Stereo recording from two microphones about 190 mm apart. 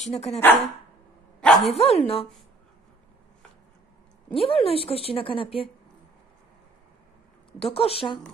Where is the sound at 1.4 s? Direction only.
5° left (ahead or behind).